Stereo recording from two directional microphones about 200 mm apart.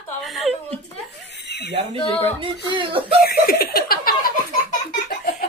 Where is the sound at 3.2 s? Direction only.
50° left (ahead or behind).